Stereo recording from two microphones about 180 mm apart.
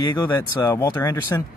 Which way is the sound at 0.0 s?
20° left (ahead or behind).